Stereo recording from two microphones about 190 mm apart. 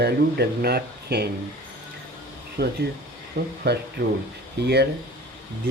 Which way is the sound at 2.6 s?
60° right (ahead or behind).